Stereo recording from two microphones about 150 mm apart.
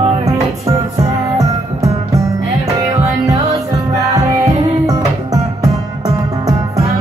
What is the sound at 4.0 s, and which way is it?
Music, 20° right (ahead or behind).